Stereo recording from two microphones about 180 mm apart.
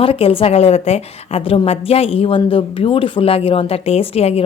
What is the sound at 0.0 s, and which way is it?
A woman's voice, 30° left (ahead or behind).